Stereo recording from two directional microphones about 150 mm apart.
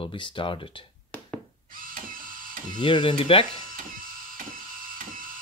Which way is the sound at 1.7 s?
65° right (ahead or behind).